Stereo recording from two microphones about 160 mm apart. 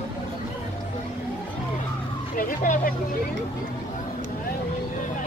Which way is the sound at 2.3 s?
55° left (ahead or behind).